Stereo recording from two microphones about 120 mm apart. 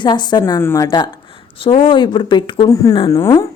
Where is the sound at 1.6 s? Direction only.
45° left (ahead or behind).